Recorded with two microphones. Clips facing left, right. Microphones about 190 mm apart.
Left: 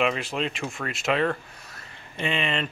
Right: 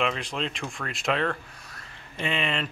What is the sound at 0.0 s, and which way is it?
Speech, 5° left (ahead or behind).